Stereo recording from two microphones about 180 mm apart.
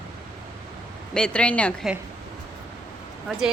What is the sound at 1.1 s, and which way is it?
Speech, 5° left (ahead or behind).